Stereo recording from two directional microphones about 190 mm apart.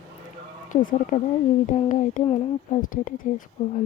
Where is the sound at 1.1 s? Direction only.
45° left (ahead or behind).